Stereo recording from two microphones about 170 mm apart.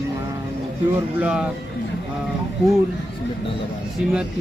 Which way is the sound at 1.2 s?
5° right (ahead or behind).